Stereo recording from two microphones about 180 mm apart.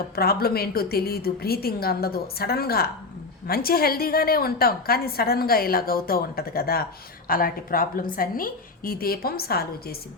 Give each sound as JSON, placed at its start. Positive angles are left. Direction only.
{"t": 0.2, "sound": "a woman's voice", "side_deg": 60}